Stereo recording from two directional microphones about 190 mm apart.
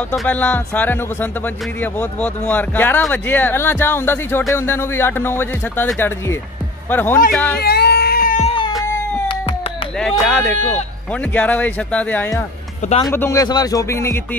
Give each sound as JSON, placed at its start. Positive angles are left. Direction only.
{"t": 0.1, "sound": "speech", "side_deg": 10}
{"t": 7.5, "sound": "cat", "side_deg": 55}
{"t": 8.4, "sound": "a sound", "side_deg": 30}
{"t": 9.9, "sound": "speech", "side_deg": 5}